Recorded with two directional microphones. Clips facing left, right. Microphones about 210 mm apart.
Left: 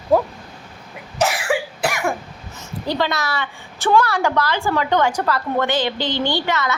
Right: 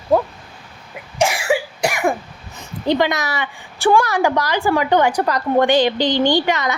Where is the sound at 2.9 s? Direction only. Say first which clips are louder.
Right 4 dB; 15° right (ahead or behind).